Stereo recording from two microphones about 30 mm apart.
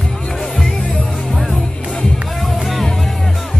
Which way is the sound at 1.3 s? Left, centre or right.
Centre.